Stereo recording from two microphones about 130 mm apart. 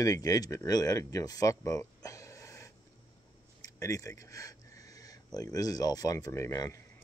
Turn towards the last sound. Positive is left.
turn(degrees=25)  # may be behind; listen again after turning